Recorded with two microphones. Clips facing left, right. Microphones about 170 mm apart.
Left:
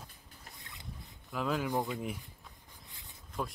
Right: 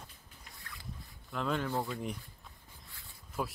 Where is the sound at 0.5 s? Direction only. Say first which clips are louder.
Right 1 dB; 20° left (ahead or behind).